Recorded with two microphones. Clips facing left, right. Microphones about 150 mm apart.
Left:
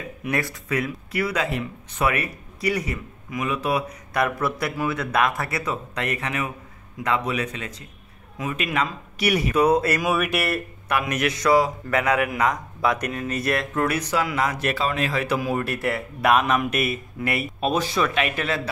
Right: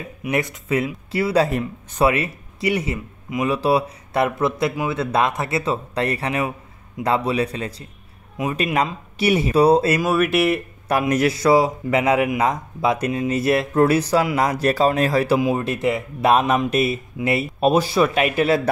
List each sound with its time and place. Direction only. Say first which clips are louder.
0.3 s speech: right 4 dB; 20° right (ahead or behind)
10.0 s speech: right 4 dB; centre (ahead or behind)
10.9 s speech: right 6 dB; 35° right (ahead or behind)
15.3 s speech: right 5 dB; 25° right (ahead or behind)